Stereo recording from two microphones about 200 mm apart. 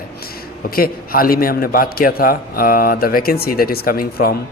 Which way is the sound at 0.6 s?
45° left (ahead or behind).